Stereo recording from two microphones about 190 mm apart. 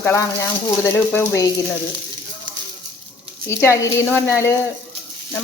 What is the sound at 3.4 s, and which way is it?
Speech, 15° left (ahead or behind).